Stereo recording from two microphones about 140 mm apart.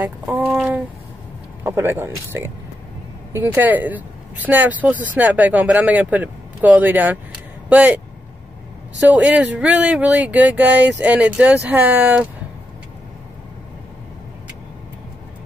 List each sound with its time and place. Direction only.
0.0 s speech: 15° right (ahead or behind)
0.6 s a sound: 10° right (ahead or behind)
1.6 s speech: 15° right (ahead or behind)
9.1 s speech: 10° right (ahead or behind)